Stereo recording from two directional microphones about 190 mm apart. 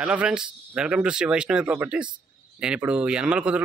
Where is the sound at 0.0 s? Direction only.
5° right (ahead or behind).